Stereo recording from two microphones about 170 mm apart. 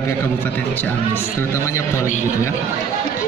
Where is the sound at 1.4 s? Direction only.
15° left (ahead or behind).